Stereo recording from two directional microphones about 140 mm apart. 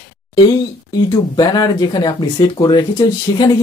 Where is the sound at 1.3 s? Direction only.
30° left (ahead or behind).